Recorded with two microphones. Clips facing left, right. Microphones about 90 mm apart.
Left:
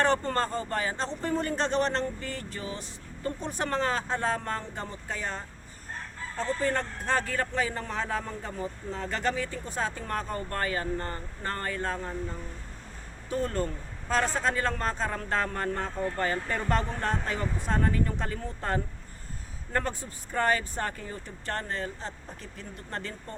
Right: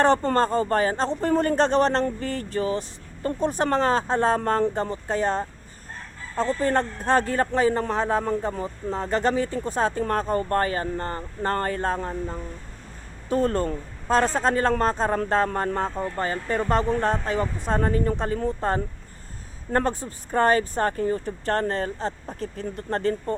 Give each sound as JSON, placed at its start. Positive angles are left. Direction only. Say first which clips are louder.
{"t": 0.0, "sound": "speech", "louder": "right 6 dB", "side_deg": -30}
{"t": 4.4, "sound": "speech", "louder": "right 11 dB", "side_deg": -45}